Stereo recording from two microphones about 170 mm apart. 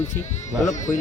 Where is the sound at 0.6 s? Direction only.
45° left (ahead or behind).